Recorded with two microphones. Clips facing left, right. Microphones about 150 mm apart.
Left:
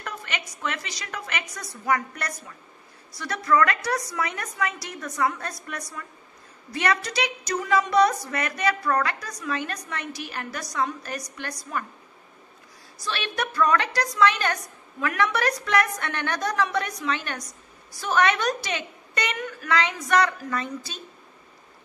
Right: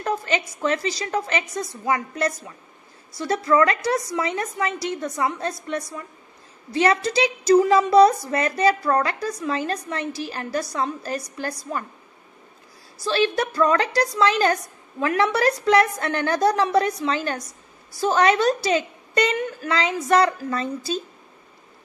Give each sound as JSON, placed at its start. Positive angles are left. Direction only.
{"t": 0.0, "sound": "a woman's voice", "side_deg": -35}
{"t": 13.0, "sound": "a woman's voice", "side_deg": -30}